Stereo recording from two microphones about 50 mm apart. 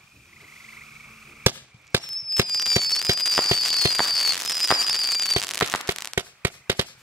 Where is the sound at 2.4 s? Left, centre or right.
Centre.